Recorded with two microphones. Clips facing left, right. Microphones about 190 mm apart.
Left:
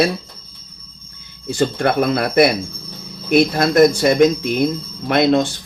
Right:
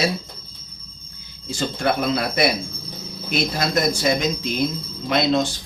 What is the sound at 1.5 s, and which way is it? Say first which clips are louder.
Speech: left 5 dB; 60° left (ahead or behind).